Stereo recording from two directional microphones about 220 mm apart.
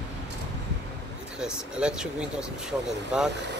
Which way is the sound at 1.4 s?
5° right (ahead or behind).